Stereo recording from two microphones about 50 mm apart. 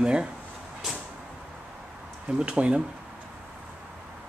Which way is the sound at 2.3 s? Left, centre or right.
Right.